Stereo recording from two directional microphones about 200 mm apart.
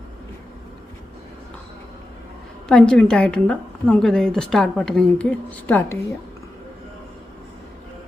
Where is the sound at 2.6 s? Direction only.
5° left (ahead or behind).